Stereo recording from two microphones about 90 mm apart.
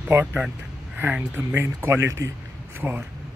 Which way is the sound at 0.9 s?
20° right (ahead or behind).